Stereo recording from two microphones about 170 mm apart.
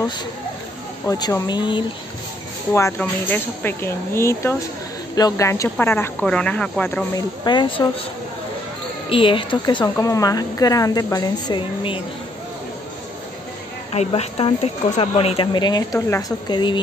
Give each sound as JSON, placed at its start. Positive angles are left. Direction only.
{"t": 1.0, "sound": "speech", "side_deg": 20}
{"t": 2.7, "sound": "speech", "side_deg": 15}
{"t": 7.2, "sound": "speech", "side_deg": 25}
{"t": 9.1, "sound": "speech", "side_deg": 30}
{"t": 13.9, "sound": "speech", "side_deg": 40}